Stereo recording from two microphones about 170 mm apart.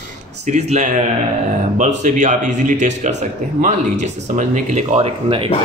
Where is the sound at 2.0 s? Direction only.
45° right (ahead or behind).